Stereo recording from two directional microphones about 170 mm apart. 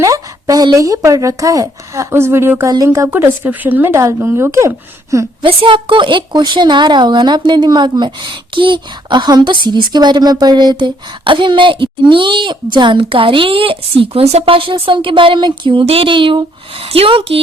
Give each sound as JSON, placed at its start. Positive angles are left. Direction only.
{"t": 0.0, "sound": "a woman's voice", "side_deg": -20}
{"t": 5.1, "sound": "a woman's voice", "side_deg": -30}